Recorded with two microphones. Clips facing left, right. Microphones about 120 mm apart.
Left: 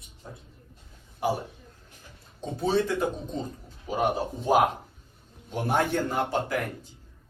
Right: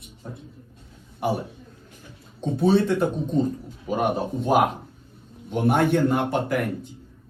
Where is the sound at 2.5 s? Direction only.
60° right (ahead or behind).